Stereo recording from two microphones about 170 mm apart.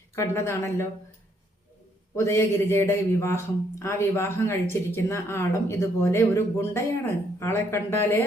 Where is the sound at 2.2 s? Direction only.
15° left (ahead or behind).